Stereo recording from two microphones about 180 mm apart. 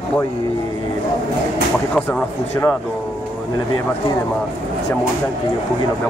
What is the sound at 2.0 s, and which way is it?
Speech, 5° left (ahead or behind).